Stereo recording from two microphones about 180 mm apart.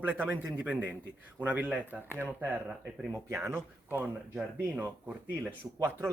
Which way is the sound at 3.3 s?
15° right (ahead or behind).